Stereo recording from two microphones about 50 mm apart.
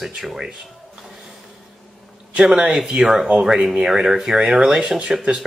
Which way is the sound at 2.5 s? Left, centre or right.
Centre.